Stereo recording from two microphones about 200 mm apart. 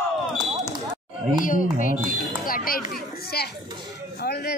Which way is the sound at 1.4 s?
40° left (ahead or behind).